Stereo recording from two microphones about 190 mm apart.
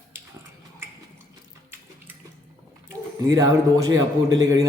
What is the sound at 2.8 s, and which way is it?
A man's voice, 20° right (ahead or behind).